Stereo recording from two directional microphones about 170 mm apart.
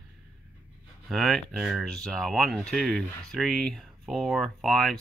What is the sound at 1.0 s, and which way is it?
Speech, centre (ahead or behind).